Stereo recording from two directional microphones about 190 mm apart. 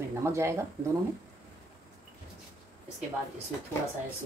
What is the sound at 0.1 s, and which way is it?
Speech, 15° right (ahead or behind).